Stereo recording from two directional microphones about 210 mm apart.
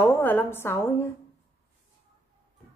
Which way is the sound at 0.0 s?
10° left (ahead or behind).